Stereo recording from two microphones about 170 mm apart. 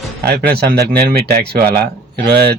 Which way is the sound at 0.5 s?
70° right (ahead or behind).